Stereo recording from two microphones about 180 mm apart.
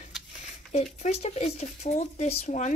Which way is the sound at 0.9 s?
35° left (ahead or behind).